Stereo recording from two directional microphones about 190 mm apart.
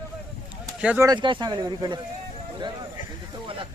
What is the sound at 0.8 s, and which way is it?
Speech, 5° right (ahead or behind).